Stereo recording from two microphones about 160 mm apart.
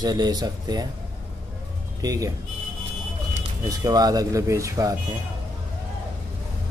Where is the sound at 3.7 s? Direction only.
25° right (ahead or behind).